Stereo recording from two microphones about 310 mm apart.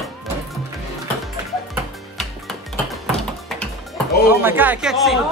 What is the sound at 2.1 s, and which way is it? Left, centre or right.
Music, centre.